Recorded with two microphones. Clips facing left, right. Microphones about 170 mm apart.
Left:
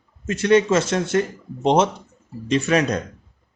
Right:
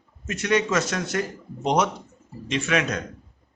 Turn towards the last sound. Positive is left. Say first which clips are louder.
# left 5 dB
turn(degrees=35)  # may be behind; listen again after turning